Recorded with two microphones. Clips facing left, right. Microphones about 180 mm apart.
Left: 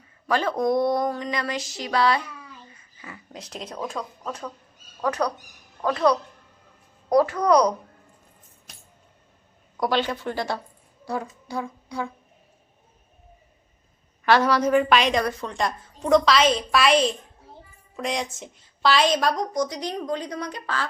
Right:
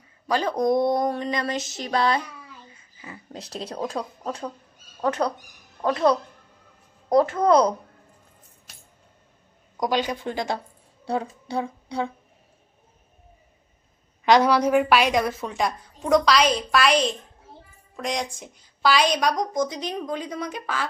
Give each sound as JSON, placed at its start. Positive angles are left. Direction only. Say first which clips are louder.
{"t": 0.3, "sound": "speech", "louder": "right 1 dB", "side_deg": -15}
{"t": 9.8, "sound": "speech", "louder": "even", "side_deg": -15}
{"t": 14.3, "sound": "a woman's voice", "louder": "right 1 dB", "side_deg": -15}
{"t": 19.4, "sound": "a woman's voice", "louder": "right 1 dB", "side_deg": -20}